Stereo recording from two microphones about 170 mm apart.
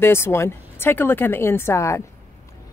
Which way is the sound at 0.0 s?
15° left (ahead or behind).